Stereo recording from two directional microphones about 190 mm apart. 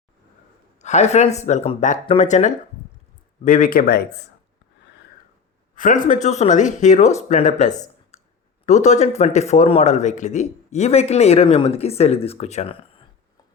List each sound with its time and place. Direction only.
0.8 s a man's voice: 35° left (ahead or behind)
5.7 s a man's voice: 45° left (ahead or behind)